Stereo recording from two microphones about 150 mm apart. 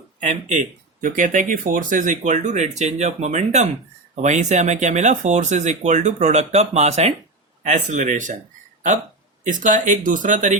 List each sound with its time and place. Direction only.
0.2 s speech: 55° right (ahead or behind)
9.4 s speech: 60° right (ahead or behind)